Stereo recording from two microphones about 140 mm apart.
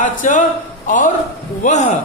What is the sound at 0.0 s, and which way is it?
Speech, 65° left (ahead or behind).